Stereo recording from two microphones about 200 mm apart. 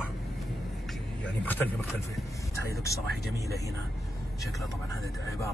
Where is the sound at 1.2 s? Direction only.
10° left (ahead or behind).